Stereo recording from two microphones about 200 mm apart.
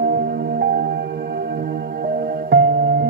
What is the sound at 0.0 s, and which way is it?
Music, 50° right (ahead or behind).